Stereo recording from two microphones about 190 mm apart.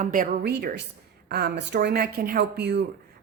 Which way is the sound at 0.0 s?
45° right (ahead or behind).